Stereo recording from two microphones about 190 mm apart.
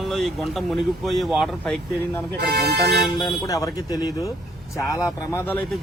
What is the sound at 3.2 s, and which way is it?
Speech, 20° left (ahead or behind).